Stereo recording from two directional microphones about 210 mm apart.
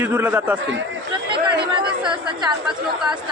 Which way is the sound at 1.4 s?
25° right (ahead or behind).